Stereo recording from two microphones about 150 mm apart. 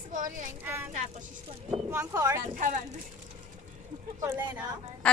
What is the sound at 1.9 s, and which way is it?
Speech, 20° right (ahead or behind).